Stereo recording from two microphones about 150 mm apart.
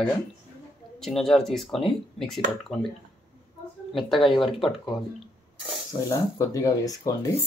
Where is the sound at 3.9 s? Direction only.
Centre (ahead or behind).